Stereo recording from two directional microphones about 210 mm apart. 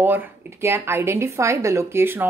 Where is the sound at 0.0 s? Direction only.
10° right (ahead or behind).